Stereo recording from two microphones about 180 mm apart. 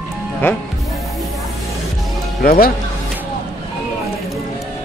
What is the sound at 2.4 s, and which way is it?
Speech, 55° left (ahead or behind).